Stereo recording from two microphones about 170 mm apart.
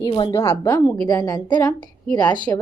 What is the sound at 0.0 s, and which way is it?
Speech, 25° left (ahead or behind).